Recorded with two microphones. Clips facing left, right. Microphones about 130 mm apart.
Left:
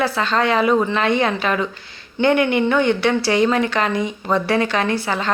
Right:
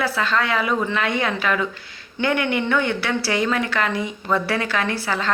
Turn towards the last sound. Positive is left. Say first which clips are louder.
# left 3 dB
turn(degrees=20)  # may be behind; listen again after turning